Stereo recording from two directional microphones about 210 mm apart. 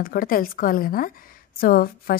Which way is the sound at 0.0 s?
45° left (ahead or behind).